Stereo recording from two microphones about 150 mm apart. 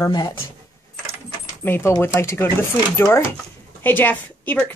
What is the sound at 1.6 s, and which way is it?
A woman's voice, 15° left (ahead or behind).